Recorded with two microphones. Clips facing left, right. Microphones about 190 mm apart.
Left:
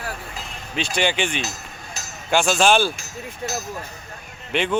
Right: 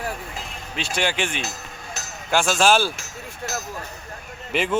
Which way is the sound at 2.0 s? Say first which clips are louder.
Even; 70° right (ahead or behind).